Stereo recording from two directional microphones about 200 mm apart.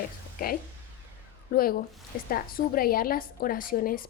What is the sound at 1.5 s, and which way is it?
A woman's voice, 50° left (ahead or behind).